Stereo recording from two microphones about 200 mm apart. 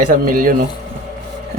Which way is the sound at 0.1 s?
40° right (ahead or behind).